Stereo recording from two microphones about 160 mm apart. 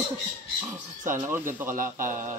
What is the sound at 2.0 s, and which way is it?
Speech, 55° right (ahead or behind).